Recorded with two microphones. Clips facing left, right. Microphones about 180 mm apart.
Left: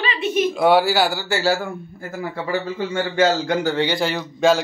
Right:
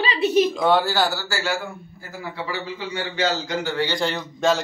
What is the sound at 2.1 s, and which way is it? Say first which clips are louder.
A man's voice: left 6 dB; 50° left (ahead or behind).